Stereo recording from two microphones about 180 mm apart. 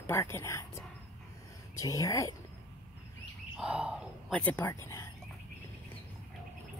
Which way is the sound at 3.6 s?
5° right (ahead or behind).